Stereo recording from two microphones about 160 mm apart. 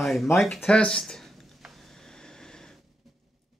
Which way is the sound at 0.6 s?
5° left (ahead or behind).